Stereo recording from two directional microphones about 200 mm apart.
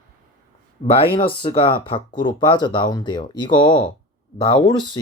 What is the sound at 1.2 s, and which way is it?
Speech, 25° left (ahead or behind).